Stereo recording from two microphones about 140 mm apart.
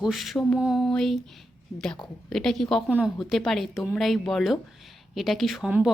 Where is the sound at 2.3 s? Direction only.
5° left (ahead or behind).